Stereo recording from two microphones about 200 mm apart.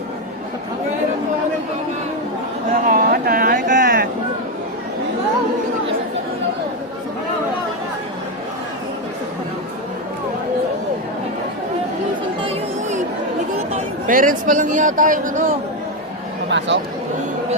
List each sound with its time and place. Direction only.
2.8 s a sound: 45° right (ahead or behind)
12.4 s chatter: 30° right (ahead or behind)
13.7 s speech: 40° right (ahead or behind)
16.5 s speech: 60° right (ahead or behind)